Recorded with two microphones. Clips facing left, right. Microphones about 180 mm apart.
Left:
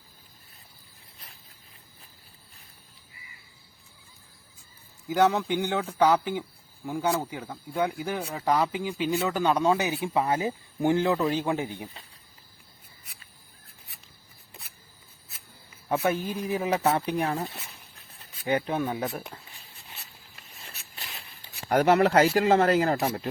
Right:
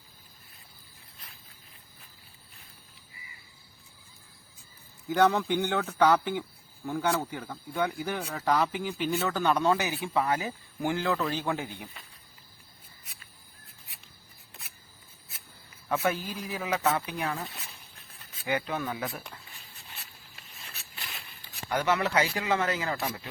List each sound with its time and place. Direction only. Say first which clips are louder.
5.0 s speech: left 1 dB; 10° left (ahead or behind)
15.9 s speech: left 3 dB; 25° left (ahead or behind)
21.7 s speech: left 7 dB; 45° left (ahead or behind)